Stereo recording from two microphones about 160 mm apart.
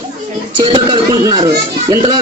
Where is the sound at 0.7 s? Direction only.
30° right (ahead or behind).